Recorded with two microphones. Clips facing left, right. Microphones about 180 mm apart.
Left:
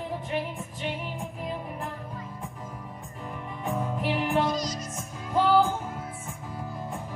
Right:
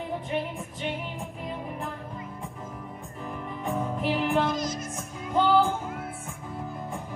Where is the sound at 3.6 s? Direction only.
Centre (ahead or behind).